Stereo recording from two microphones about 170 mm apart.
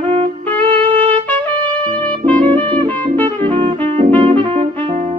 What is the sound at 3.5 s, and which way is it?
Music, 30° right (ahead or behind).